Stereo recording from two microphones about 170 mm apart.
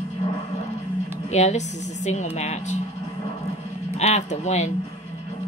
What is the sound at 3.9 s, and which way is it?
Speech, 40° left (ahead or behind).